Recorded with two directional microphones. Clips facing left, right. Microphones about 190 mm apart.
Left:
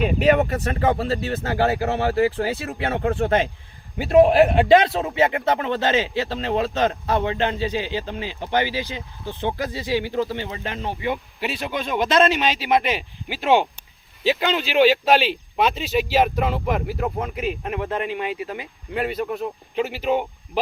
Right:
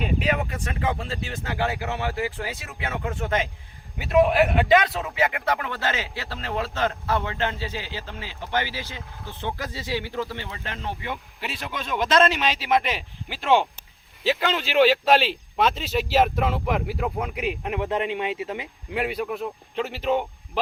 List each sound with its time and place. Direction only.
0.2 s speech: 40° left (ahead or behind); by 11.2 s 20° left (ahead or behind)
11.9 s speech: 5° left (ahead or behind)
14.3 s speech: 15° left (ahead or behind)
14.7 s speech: 5° left (ahead or behind)
17.3 s speech: 15° right (ahead or behind)
18.9 s speech: 5° right (ahead or behind)